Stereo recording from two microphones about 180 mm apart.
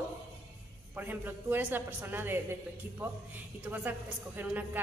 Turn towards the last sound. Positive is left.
turn(degrees=-10)  # may be behind; listen again after turning